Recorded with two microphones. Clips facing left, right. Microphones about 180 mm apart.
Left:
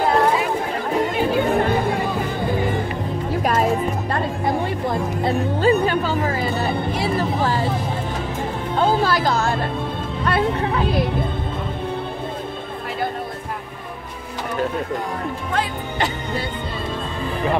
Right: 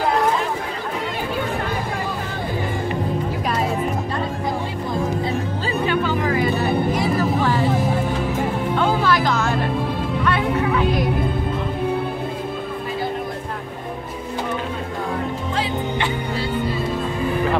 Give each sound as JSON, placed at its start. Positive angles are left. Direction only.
{"t": 5.2, "sound": "music", "side_deg": 55}
{"t": 6.4, "sound": "music", "side_deg": 30}
{"t": 8.7, "sound": "music", "side_deg": 35}